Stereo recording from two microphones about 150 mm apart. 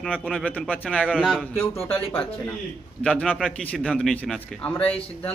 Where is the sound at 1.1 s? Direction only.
Centre (ahead or behind).